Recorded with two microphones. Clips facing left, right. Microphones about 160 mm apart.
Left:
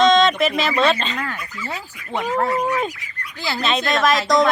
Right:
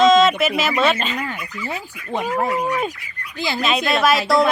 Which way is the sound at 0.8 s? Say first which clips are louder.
Left 1 dB; 5° right (ahead or behind).